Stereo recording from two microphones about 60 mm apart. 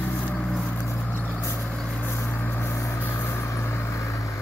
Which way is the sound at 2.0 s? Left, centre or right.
Left.